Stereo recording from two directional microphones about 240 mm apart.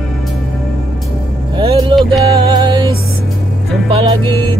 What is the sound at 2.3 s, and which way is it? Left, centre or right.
Music, centre.